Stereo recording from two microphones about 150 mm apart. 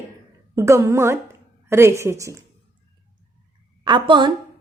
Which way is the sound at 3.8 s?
30° right (ahead or behind).